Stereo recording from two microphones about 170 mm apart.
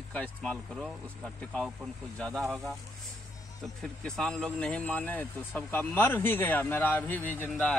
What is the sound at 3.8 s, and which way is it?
Speech, 5° left (ahead or behind).